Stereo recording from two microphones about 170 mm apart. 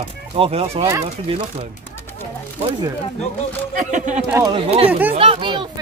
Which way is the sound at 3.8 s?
50° right (ahead or behind).